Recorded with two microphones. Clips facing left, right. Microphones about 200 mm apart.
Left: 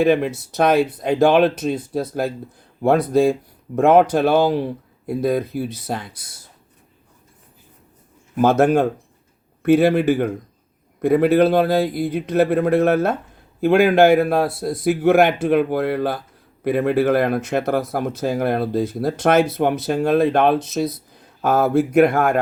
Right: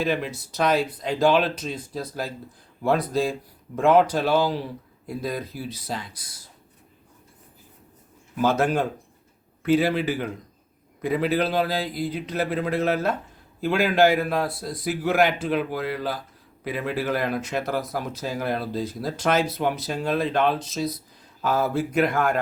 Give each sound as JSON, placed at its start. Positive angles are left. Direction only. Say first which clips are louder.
{"t": 0.0, "sound": "speech", "louder": "left 9 dB", "side_deg": 55}
{"t": 3.1, "sound": "speech", "louder": "left 9 dB", "side_deg": 55}
{"t": 8.4, "sound": "speech", "louder": "left 7 dB", "side_deg": 50}
{"t": 9.6, "sound": "speech", "louder": "left 7 dB", "side_deg": 60}